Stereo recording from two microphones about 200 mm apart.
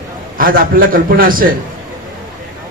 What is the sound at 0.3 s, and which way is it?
A man's voice, 45° right (ahead or behind).